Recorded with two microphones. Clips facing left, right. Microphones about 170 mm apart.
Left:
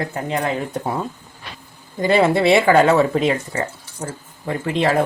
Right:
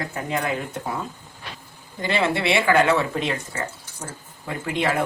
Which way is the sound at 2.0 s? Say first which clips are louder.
Left 7 dB; 40° left (ahead or behind).